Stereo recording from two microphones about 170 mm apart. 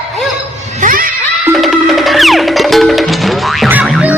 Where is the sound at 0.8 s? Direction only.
55° right (ahead or behind).